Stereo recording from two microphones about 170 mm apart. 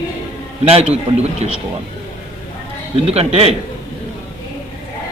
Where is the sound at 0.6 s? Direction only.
40° right (ahead or behind).